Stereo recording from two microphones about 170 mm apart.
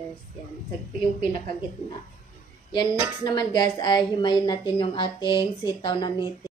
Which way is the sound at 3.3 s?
25° left (ahead or behind).